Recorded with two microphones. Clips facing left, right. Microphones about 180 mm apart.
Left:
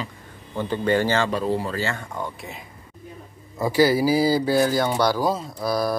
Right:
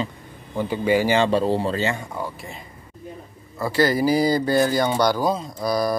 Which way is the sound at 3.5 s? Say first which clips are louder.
Left 2 dB; 15° left (ahead or behind).